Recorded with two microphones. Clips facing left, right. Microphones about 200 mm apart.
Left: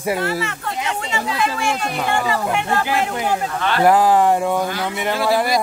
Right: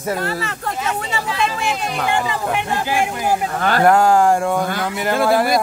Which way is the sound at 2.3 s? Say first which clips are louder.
Left 1 dB; 15° right (ahead or behind).